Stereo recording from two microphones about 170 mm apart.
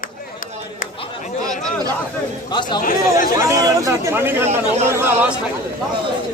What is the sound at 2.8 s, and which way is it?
Speech, 55° left (ahead or behind).